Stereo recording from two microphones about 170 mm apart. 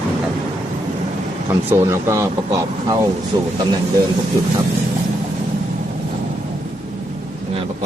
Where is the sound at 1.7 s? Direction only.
15° right (ahead or behind).